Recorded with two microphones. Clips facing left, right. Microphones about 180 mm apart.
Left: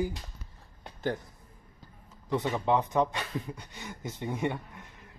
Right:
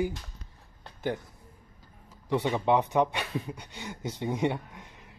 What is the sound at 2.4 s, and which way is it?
Speech, 15° right (ahead or behind).